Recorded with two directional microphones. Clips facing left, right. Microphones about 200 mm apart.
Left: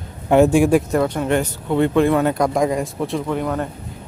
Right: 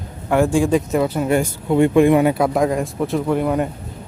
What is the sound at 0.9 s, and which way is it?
Speech, 5° right (ahead or behind).